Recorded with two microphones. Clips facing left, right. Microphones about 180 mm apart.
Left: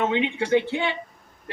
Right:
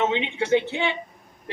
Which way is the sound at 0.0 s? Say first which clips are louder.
Left 1 dB; 20° right (ahead or behind).